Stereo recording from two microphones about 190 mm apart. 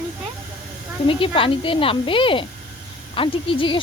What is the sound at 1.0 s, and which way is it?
Speech, 30° left (ahead or behind).